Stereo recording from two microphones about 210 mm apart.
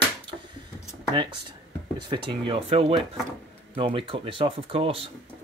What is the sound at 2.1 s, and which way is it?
Speech, 20° right (ahead or behind).